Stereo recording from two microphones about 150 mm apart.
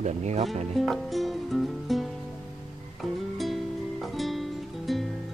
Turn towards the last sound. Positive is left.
turn(degrees=0)  # may be behind; listen again after turning